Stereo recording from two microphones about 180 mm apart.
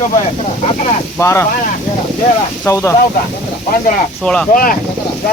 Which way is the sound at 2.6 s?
15° left (ahead or behind).